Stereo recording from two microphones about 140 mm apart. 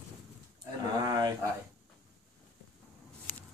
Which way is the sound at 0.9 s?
30° right (ahead or behind).